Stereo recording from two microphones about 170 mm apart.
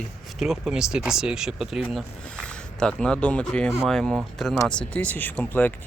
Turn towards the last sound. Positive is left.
turn(degrees=10)  # may be behind; listen again after turning